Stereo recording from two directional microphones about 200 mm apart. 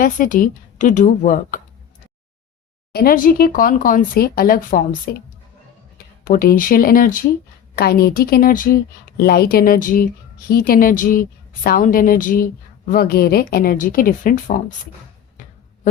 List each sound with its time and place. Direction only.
0.0 s a woman's voice: 40° left (ahead or behind)
2.9 s speech: 50° left (ahead or behind)
6.2 s speech: 45° left (ahead or behind)